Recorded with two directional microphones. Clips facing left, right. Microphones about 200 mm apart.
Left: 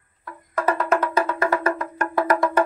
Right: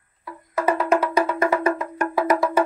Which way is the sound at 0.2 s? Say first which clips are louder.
Right 1 dB; 10° right (ahead or behind).